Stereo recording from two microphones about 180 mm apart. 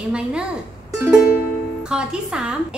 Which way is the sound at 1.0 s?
Centre (ahead or behind).